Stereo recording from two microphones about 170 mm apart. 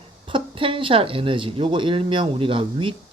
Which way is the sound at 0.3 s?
30° right (ahead or behind).